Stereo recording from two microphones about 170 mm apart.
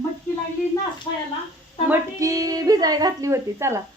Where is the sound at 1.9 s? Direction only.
20° right (ahead or behind).